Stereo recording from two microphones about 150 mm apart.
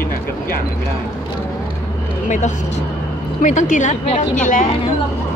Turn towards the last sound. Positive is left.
turn(degrees=60)  # may be behind; listen again after turning